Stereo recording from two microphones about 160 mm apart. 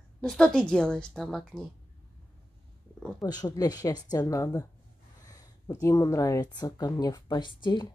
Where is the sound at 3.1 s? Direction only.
25° left (ahead or behind).